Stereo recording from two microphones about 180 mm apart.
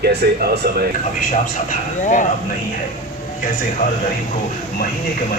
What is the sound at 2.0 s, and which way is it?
Speech, 45° left (ahead or behind).